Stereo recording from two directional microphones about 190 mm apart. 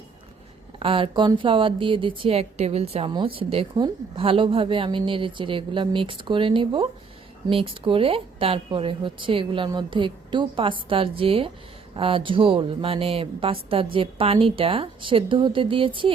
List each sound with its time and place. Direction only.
0.8 s speech: 30° right (ahead or behind)